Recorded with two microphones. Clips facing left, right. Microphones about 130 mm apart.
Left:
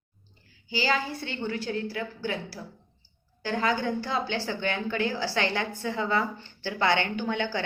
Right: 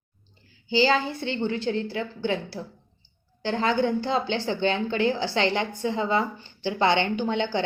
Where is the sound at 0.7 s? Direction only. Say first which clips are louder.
Right 6 dB; 25° right (ahead or behind).